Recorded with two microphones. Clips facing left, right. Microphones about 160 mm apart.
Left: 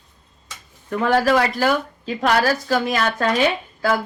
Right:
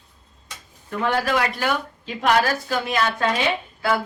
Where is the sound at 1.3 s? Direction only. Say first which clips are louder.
Left 5 dB; 40° left (ahead or behind).